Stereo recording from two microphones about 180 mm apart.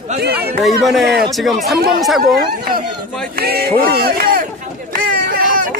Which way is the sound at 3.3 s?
60° right (ahead or behind).